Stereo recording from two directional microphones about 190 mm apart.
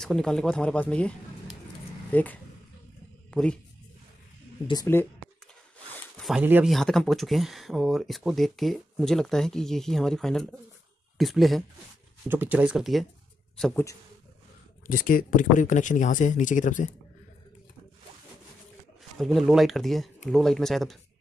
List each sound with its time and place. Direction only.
0.0 s speech: 5° left (ahead or behind)
2.1 s speech: 10° left (ahead or behind)
3.3 s a sound: 5° left (ahead or behind)
4.9 s speech: 10° left (ahead or behind)
6.1 s a sound: centre (ahead or behind)
6.4 s speech: 10° right (ahead or behind)
6.7 s speech: centre (ahead or behind)
14.9 s speech: 45° left (ahead or behind)
19.1 s speech: centre (ahead or behind)